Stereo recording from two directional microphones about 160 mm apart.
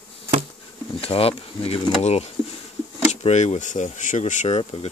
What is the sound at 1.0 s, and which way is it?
Speech, 35° left (ahead or behind).